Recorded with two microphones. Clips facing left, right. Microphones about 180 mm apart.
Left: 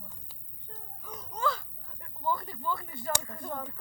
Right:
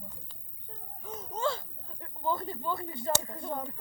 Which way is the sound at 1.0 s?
25° right (ahead or behind).